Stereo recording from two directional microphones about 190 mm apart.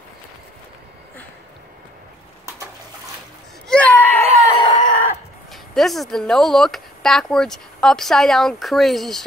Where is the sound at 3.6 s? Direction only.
5° left (ahead or behind).